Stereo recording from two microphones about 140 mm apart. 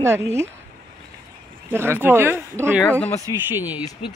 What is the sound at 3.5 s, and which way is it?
Speech, 10° right (ahead or behind).